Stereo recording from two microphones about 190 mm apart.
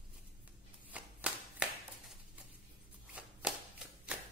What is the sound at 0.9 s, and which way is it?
Clapping, 5° right (ahead or behind).